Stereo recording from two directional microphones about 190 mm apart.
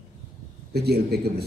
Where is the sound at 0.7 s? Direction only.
55° right (ahead or behind).